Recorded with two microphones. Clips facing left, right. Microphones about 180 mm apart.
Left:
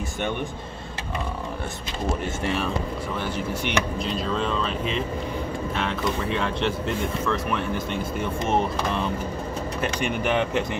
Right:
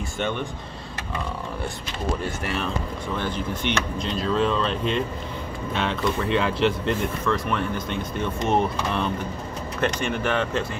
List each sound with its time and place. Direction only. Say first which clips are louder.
2.2 s speech: left 2 dB; 25° left (ahead or behind)
3.2 s speech: right 1 dB; 10° left (ahead or behind)
9.8 s speech: right 3 dB; 10° left (ahead or behind)